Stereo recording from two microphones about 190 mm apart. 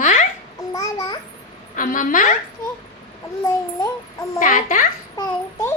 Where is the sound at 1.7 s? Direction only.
45° left (ahead or behind).